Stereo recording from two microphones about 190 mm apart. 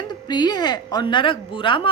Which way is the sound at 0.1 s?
20° left (ahead or behind).